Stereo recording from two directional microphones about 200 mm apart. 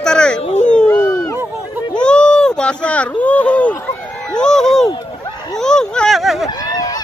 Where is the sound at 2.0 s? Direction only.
5° left (ahead or behind).